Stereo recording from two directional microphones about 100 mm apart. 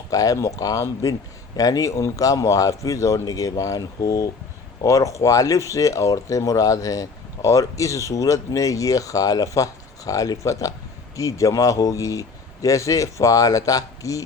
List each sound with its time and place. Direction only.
0.1 s speech: 35° left (ahead or behind)